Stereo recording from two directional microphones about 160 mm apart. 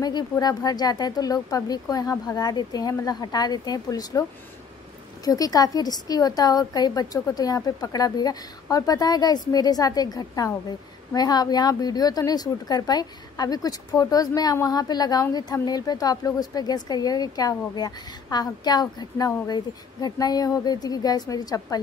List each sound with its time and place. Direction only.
0.0 s a woman's voice: 25° left (ahead or behind)
5.2 s a woman's voice: 25° left (ahead or behind)